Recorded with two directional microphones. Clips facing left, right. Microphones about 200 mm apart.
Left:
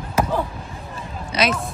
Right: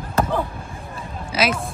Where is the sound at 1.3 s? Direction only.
5° right (ahead or behind).